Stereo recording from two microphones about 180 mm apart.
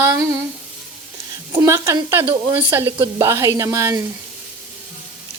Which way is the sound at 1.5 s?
15° right (ahead or behind).